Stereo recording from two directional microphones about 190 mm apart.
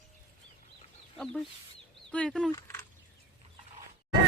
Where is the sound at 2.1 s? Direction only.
5° left (ahead or behind).